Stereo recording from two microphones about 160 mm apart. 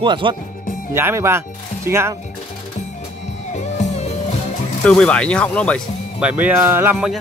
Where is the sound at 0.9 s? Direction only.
15° right (ahead or behind).